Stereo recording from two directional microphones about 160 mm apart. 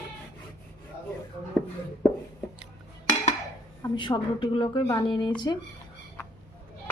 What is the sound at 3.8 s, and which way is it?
A woman's voice, 25° left (ahead or behind).